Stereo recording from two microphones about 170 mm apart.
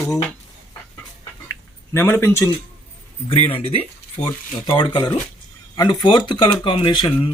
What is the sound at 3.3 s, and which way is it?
Speech, 35° left (ahead or behind).